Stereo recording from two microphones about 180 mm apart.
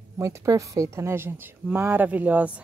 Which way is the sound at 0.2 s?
15° right (ahead or behind).